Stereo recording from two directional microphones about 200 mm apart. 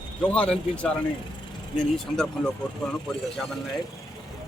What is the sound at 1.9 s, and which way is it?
Speech, 5° left (ahead or behind).